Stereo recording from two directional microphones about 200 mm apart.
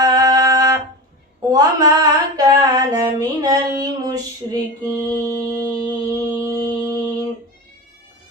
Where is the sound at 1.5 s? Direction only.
20° right (ahead or behind).